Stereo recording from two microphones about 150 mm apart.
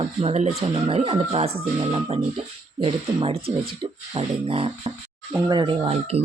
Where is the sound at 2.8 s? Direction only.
35° right (ahead or behind).